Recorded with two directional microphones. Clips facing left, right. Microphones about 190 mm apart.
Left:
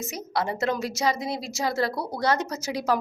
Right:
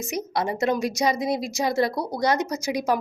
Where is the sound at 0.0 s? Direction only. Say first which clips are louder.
Right 2 dB; 15° right (ahead or behind).